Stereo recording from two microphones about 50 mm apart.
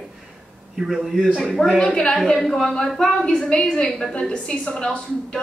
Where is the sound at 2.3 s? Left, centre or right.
Centre.